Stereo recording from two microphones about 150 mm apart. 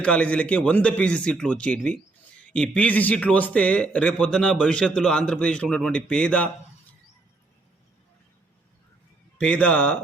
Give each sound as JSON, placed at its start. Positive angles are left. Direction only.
{"t": 0.0, "sound": "speech", "side_deg": 10}
{"t": 9.4, "sound": "speech", "side_deg": 10}